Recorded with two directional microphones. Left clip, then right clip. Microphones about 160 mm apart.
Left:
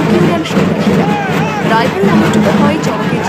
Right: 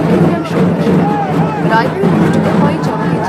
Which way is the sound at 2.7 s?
20° left (ahead or behind).